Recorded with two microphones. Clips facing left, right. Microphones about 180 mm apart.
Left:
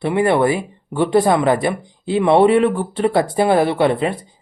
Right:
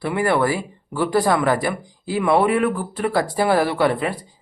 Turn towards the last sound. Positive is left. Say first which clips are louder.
# left 3 dB
turn(degrees=25)  # may be behind; listen again after turning